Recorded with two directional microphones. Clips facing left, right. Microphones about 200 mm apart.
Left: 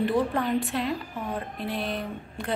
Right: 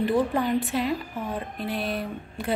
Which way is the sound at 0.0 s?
Centre (ahead or behind).